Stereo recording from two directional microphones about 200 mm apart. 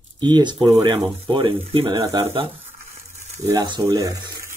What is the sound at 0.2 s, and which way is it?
Speech, 20° right (ahead or behind).